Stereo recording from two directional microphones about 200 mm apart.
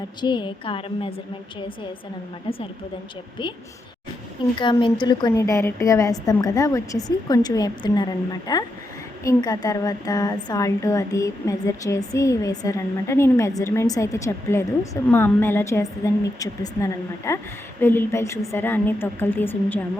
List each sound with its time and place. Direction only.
0.2 s a woman's voice: 25° left (ahead or behind)
2.5 s a woman's voice: 25° left (ahead or behind)
4.6 s a woman's voice: 25° left (ahead or behind)